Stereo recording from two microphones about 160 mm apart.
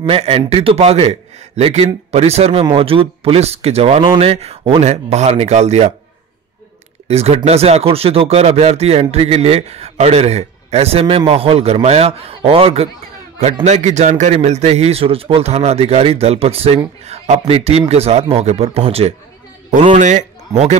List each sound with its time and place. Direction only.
0.0 s speech: 35° right (ahead or behind)
7.1 s speech: 40° right (ahead or behind)